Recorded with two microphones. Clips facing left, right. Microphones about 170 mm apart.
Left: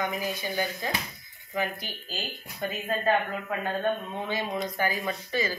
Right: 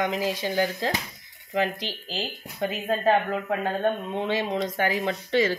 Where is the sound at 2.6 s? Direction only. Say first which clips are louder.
Right 5 dB; 80° right.